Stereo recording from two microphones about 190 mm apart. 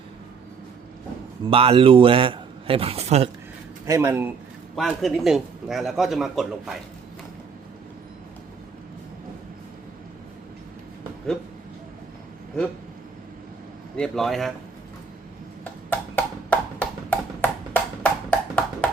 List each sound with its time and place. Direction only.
1.5 s a man's voice: 30° right (ahead or behind)
3.8 s a man's voice: 15° right (ahead or behind)
4.7 s a man's voice: centre (ahead or behind)
13.9 s a man's voice: 5° left (ahead or behind)
15.9 s a sound: 10° left (ahead or behind)
18.0 s music: 10° left (ahead or behind)